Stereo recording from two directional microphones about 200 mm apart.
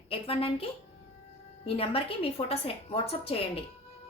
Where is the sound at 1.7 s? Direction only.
30° left (ahead or behind).